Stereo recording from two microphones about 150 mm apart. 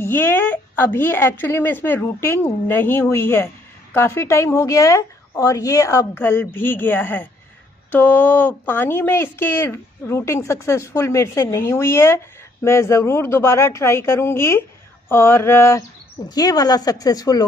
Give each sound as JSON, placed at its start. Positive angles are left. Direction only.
{"t": 0.0, "sound": "a woman's voice", "side_deg": 15}